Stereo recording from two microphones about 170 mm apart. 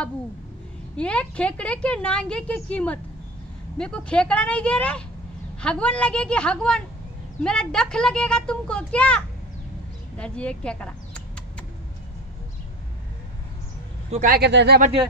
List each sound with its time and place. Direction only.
0.9 s a child's voice: 5° left (ahead or behind)
14.1 s speech: 60° right (ahead or behind); by 14.8 s 85° right